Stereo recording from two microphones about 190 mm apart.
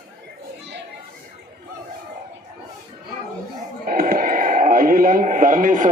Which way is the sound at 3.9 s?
50° right (ahead or behind).